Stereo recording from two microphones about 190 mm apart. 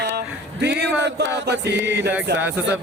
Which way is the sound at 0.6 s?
60° right (ahead or behind).